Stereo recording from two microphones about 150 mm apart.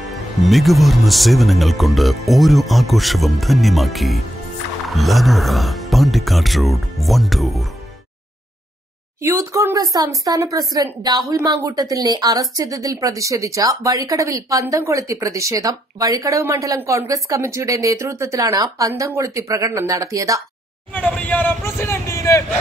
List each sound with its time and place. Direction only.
0.0 s speech: centre (ahead or behind)
9.2 s speech: 20° right (ahead or behind)
20.9 s speech: 10° left (ahead or behind)